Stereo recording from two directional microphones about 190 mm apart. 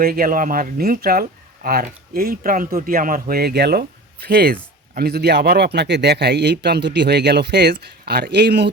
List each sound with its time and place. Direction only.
0.0 s a man's voice: 50° right (ahead or behind)